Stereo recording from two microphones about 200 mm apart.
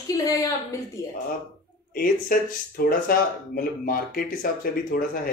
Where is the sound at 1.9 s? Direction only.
45° left (ahead or behind).